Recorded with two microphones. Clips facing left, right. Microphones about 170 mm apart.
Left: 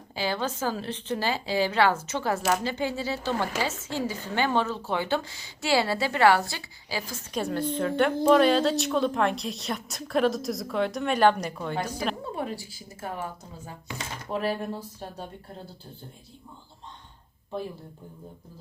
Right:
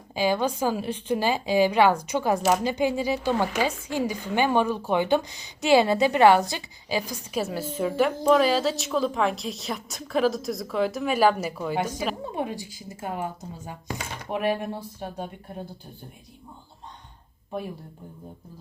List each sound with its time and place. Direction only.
0.2 s a woman's voice: 15° right (ahead or behind)
7.3 s a woman's voice: 5° right (ahead or behind)
12.3 s a woman's voice: 20° right (ahead or behind)